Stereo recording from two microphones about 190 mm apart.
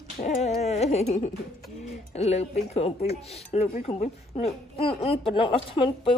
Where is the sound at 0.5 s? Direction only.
35° left (ahead or behind).